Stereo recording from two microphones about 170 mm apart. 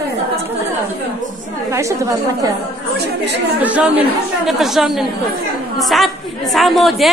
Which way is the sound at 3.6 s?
10° right (ahead or behind).